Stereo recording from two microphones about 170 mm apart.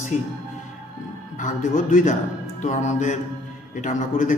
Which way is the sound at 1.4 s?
45° left (ahead or behind).